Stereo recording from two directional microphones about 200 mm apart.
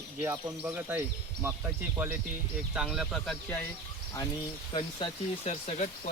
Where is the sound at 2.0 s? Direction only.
10° right (ahead or behind).